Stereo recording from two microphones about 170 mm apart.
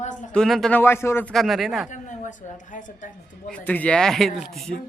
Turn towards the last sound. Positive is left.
turn(degrees=0)  # may be behind; listen again after turning